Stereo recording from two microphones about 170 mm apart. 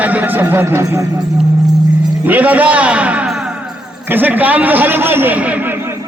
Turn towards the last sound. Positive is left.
turn(degrees=-10)  # may be behind; listen again after turning